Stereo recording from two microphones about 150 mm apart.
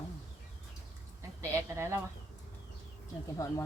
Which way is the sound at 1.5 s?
20° right (ahead or behind).